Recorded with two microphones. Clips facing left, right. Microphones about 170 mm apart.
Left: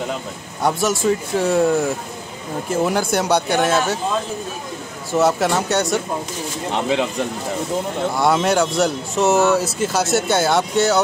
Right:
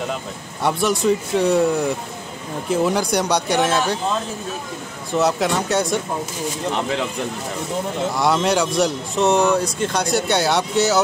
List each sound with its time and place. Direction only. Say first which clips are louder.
0.6 s speech: even; centre (ahead or behind)
5.1 s speech: left 2 dB; centre (ahead or behind)
6.7 s speech: left 5 dB; 20° left (ahead or behind)
8.2 s speech: left 2 dB; centre (ahead or behind)